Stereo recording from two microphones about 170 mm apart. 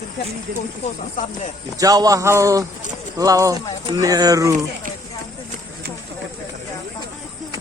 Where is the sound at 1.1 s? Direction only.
45° left (ahead or behind).